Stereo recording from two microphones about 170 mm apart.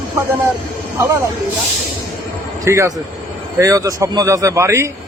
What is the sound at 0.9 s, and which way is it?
Speech, 15° right (ahead or behind).